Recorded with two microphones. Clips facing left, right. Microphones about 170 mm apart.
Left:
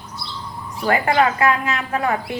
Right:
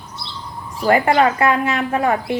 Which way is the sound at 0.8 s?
35° right (ahead or behind).